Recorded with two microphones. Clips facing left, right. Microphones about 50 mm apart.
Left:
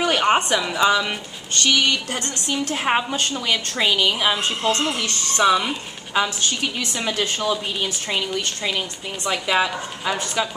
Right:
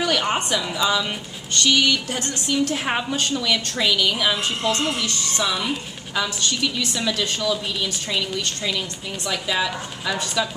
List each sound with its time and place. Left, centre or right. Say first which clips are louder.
0.0 s a woman's voice: left 4 dB; left
2.7 s a woman's voice: left 3 dB; centre
3.2 s a woman's voice: even; left